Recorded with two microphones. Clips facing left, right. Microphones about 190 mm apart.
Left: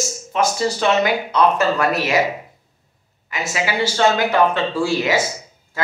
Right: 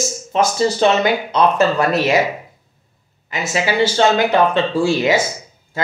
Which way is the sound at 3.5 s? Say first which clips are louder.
Right 5 dB; 25° right (ahead or behind).